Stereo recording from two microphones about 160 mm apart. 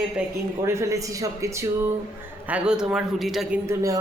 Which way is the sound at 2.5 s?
5° right (ahead or behind).